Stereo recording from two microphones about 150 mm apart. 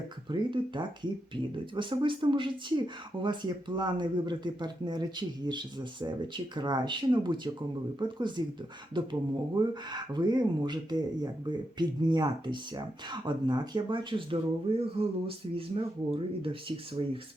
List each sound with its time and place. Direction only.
0.3 s speech: 30° right (ahead or behind)